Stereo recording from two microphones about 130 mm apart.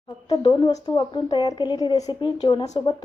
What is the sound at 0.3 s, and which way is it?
Speech, 35° left (ahead or behind).